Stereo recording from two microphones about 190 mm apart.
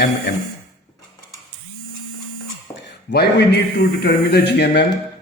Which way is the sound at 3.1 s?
60° left (ahead or behind).